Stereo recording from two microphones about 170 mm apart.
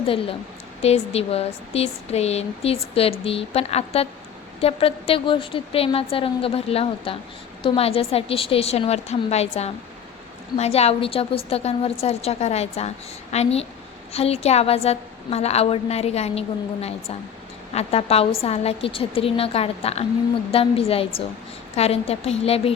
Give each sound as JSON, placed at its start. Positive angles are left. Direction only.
{"t": 0.0, "sound": "speech", "side_deg": 35}